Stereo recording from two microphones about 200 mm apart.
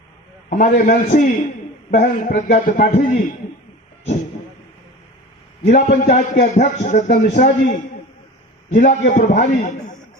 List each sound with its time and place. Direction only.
0.5 s a man's voice: 40° left (ahead or behind)
5.6 s a man's voice: 35° left (ahead or behind)